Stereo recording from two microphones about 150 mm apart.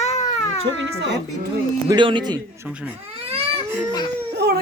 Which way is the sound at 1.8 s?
30° right (ahead or behind).